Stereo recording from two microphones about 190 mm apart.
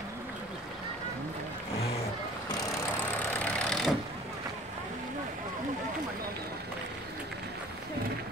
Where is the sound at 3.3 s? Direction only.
5° left (ahead or behind).